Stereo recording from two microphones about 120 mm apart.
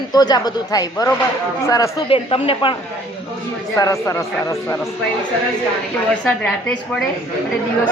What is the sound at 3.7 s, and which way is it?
Speech, 25° left (ahead or behind).